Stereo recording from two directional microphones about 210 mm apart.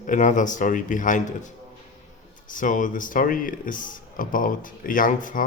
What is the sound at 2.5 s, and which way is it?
Speech, 40° left (ahead or behind).